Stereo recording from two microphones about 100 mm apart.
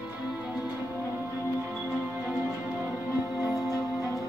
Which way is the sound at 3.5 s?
40° left (ahead or behind).